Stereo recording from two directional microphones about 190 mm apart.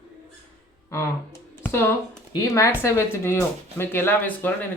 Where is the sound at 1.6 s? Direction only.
10° left (ahead or behind).